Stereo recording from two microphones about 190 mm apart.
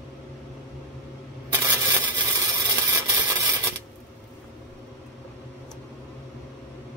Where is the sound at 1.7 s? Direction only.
25° right (ahead or behind).